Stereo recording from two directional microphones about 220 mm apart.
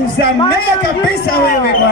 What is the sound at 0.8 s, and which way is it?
Speech, 45° left (ahead or behind).